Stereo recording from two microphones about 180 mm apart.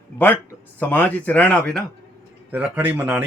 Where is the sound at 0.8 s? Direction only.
10° left (ahead or behind).